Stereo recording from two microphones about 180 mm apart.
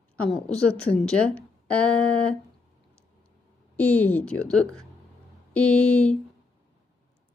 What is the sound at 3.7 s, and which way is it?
A woman's voice, 10° left (ahead or behind).